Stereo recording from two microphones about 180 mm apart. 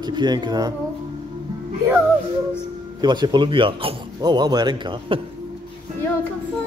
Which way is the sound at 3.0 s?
25° right (ahead or behind).